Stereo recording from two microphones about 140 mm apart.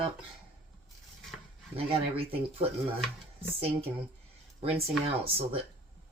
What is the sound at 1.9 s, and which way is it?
Speech, 40° right (ahead or behind).